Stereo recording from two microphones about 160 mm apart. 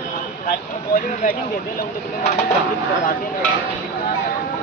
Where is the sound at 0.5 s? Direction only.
60° left (ahead or behind).